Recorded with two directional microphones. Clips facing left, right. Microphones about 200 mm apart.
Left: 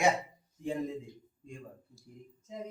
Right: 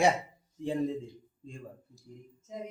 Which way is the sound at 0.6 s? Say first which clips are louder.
Right 4 dB; 30° right (ahead or behind).